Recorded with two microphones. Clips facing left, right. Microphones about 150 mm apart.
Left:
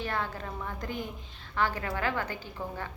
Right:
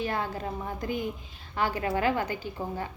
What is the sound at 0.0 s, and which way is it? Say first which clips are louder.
Speech: right 3 dB; 15° right (ahead or behind).